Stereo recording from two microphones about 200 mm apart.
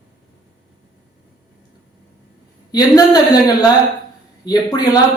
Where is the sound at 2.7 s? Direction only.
20° left (ahead or behind).